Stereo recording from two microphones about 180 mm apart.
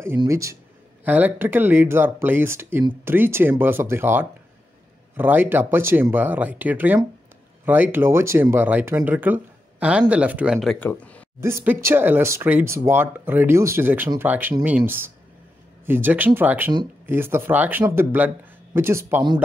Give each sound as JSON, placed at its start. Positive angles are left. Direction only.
{"t": 0.2, "sound": "speech", "side_deg": -15}
{"t": 11.4, "sound": "speech", "side_deg": -15}